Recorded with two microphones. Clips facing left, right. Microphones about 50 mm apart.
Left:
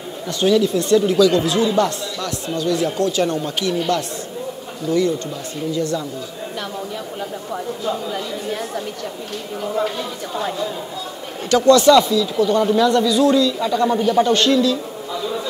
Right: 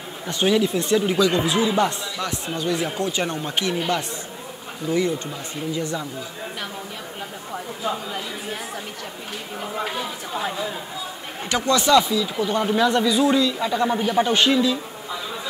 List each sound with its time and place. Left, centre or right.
0.3 s speech: centre
7.8 s speech: centre